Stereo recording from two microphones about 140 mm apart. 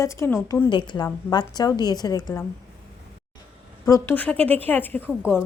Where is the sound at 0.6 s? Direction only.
35° left (ahead or behind).